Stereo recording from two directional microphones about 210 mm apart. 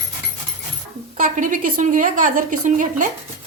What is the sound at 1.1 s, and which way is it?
A woman's voice, 40° right (ahead or behind).